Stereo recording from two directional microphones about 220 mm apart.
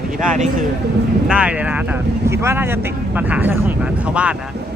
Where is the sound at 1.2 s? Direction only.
5° right (ahead or behind).